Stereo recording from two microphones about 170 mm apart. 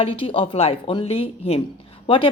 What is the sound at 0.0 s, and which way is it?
A woman's voice, 30° left (ahead or behind).